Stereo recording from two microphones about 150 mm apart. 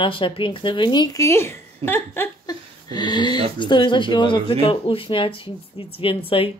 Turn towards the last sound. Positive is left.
turn(degrees=35)  # may be behind; listen again after turning